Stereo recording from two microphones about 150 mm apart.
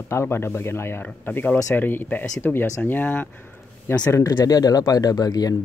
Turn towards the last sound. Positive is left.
turn(degrees=25)  # may be behind; listen again after turning